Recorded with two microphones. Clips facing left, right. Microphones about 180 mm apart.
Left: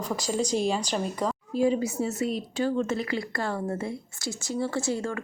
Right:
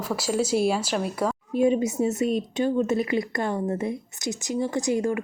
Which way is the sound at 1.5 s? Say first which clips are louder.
Right 3 dB; 20° right (ahead or behind).